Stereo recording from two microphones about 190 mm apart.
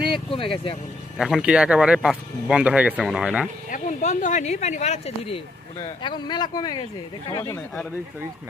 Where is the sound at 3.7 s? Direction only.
40° left (ahead or behind); by 7.5 s 20° left (ahead or behind).